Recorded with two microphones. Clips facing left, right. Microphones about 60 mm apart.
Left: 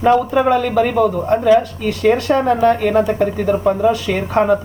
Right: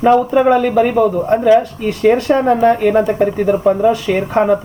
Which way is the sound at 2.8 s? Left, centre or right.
Centre.